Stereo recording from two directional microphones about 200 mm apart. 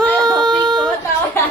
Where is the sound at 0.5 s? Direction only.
20° right (ahead or behind).